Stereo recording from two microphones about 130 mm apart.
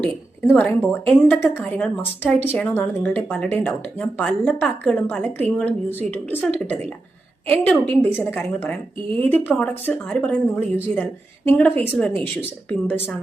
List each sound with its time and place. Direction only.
0.0 s a woman's voice: 10° left (ahead or behind)